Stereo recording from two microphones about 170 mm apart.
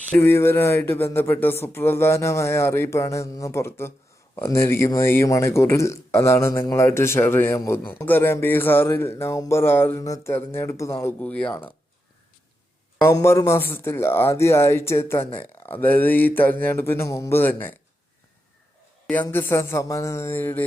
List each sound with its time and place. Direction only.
0.1 s speech: 15° left (ahead or behind)
13.0 s speech: 15° left (ahead or behind)
19.0 s speech: 10° left (ahead or behind)